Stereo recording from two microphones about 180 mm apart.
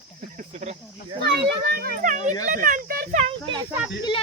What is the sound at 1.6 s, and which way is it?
A child's voice, 60° right (ahead or behind).